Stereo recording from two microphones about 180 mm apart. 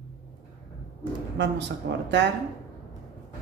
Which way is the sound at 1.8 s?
75° right (ahead or behind).